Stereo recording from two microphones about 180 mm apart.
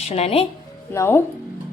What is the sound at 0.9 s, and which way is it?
Speech, 15° left (ahead or behind).